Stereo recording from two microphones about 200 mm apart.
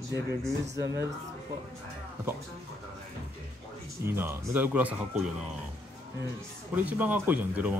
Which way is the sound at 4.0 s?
10° right (ahead or behind).